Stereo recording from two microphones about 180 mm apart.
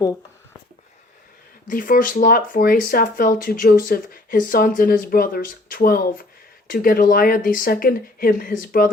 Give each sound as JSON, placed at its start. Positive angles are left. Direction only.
{"t": 1.6, "sound": "speech", "side_deg": 50}